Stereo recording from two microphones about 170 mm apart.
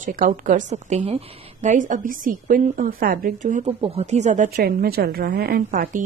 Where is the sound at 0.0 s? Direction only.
50° right (ahead or behind).